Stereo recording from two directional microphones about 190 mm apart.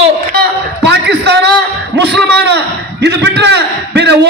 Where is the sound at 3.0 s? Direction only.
60° right (ahead or behind).